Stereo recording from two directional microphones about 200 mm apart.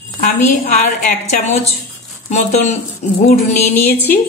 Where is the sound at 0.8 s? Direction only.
40° left (ahead or behind).